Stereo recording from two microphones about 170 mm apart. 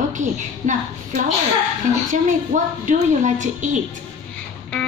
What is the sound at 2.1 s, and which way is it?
A woman's voice, 50° right (ahead or behind).